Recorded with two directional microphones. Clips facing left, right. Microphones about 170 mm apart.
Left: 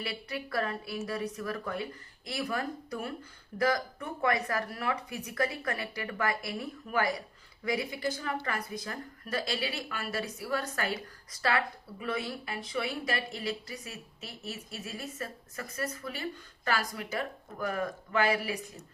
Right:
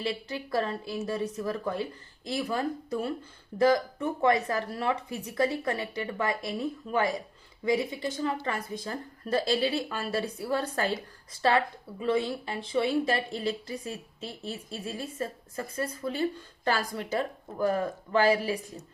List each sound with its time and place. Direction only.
0.0 s speech: 25° right (ahead or behind)